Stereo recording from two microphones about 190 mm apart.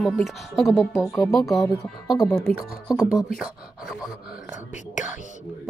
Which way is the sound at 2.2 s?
20° left (ahead or behind).